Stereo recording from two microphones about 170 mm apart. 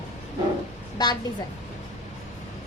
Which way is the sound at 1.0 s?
25° left (ahead or behind).